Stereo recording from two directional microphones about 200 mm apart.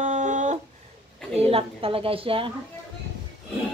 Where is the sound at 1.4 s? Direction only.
30° right (ahead or behind).